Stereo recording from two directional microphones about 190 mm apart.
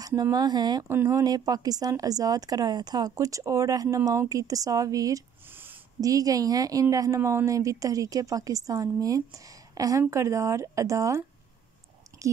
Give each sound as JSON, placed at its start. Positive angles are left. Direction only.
{"t": 0.0, "sound": "speech", "side_deg": -20}